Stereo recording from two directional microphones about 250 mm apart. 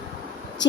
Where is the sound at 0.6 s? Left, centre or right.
Left.